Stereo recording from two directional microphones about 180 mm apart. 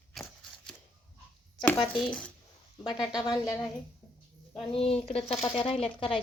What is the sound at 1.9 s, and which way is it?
Speech, 5° left (ahead or behind).